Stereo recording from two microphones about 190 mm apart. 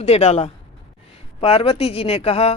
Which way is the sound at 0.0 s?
35° left (ahead or behind).